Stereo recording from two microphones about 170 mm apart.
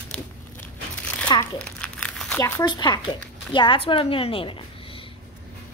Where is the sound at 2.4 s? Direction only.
25° left (ahead or behind).